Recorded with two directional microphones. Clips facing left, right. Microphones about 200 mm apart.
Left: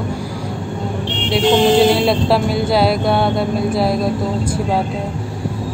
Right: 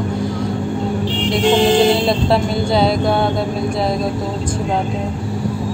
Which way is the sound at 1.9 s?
Centre (ahead or behind).